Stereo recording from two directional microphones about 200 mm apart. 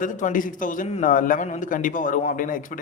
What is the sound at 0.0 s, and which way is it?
A man's voice, 40° left (ahead or behind).